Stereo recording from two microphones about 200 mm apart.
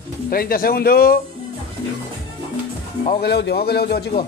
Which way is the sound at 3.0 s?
55° left (ahead or behind).